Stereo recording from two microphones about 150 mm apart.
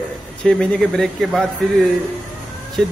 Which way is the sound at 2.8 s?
5° left (ahead or behind).